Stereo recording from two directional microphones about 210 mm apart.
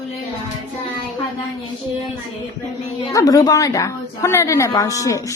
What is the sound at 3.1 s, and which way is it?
A woman's voice, 15° left (ahead or behind).